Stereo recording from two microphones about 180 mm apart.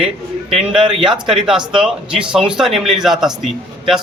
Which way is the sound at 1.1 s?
5° right (ahead or behind).